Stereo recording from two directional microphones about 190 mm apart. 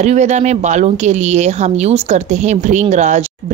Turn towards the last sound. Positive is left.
turn(degrees=-35)  # may be behind; listen again after turning